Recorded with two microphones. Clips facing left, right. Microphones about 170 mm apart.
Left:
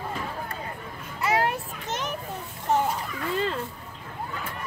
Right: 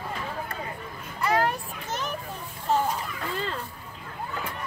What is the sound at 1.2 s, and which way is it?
Children playing, 20° left (ahead or behind).